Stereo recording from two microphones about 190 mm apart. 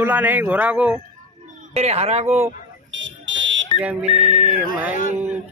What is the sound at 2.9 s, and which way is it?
Fire alarm, 85° right.